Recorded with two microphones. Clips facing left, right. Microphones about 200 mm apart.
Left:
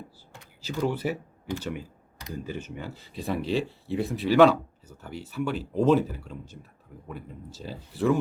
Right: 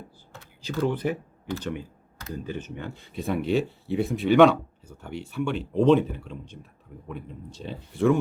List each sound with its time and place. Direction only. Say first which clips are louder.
0.6 s speech: right 2 dB; 10° left (ahead or behind)